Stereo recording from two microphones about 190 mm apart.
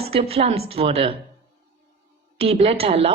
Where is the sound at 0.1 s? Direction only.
30° right (ahead or behind).